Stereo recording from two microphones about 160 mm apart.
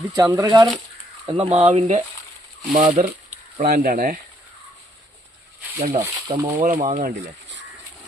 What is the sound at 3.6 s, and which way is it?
Speech, 70° right (ahead or behind).